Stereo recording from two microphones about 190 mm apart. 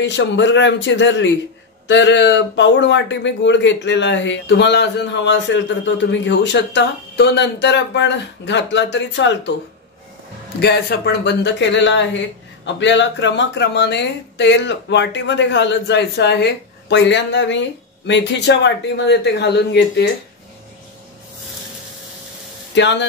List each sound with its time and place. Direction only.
0.0 s speech: 70° left (ahead or behind)
10.6 s speech: 55° left (ahead or behind)
22.8 s speech: 70° left (ahead or behind)